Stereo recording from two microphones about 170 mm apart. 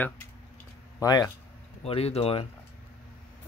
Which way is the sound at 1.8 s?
35° left (ahead or behind).